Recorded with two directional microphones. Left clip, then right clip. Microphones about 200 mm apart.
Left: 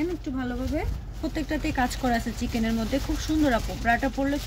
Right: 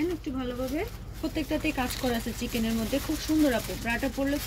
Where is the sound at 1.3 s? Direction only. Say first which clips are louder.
Left 1 dB; 35° left (ahead or behind).